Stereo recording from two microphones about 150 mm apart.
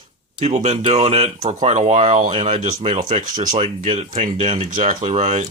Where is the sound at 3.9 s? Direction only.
50° right (ahead or behind).